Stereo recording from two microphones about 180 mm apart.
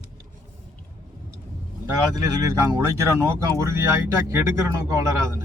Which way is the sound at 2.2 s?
20° right (ahead or behind).